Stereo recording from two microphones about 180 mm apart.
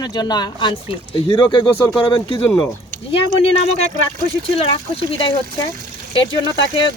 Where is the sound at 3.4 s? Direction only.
35° left (ahead or behind).